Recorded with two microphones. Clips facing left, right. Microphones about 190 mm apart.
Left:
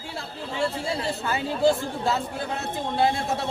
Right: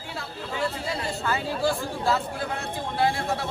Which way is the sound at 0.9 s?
20° left (ahead or behind).